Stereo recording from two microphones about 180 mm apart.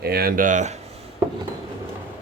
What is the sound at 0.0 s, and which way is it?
Speech, 55° right (ahead or behind).